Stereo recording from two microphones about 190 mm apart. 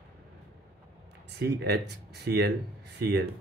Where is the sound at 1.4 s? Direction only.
60° right (ahead or behind).